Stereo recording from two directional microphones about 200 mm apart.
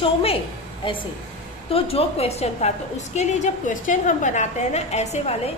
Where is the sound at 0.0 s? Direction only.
30° left (ahead or behind).